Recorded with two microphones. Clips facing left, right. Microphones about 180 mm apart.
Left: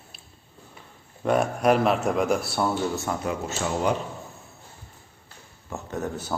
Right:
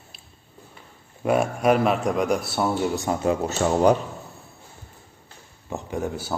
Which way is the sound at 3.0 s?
25° right (ahead or behind).